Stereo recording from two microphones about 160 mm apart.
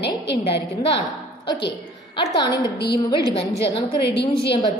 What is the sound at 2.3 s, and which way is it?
Speech, 25° left (ahead or behind).